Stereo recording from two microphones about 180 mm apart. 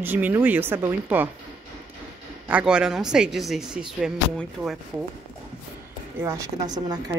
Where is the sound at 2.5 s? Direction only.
5° right (ahead or behind).